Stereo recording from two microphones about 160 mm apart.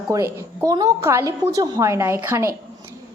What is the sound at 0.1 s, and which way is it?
A woman's voice, 20° right (ahead or behind).